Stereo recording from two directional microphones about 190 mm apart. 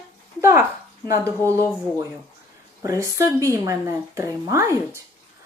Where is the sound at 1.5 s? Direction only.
15° right (ahead or behind).